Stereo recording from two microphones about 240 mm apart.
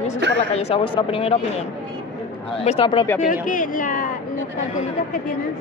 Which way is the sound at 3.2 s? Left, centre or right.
Left.